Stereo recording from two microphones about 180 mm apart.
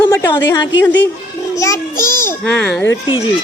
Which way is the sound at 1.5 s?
20° left (ahead or behind).